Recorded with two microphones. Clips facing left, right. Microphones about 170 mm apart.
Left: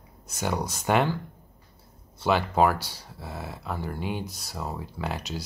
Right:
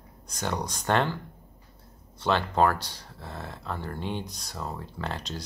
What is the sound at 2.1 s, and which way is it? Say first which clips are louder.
Speech: left 2 dB; 10° left (ahead or behind).